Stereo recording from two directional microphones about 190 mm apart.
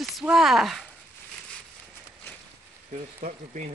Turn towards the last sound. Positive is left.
turn(degrees=-45)  # may be behind; listen again after turning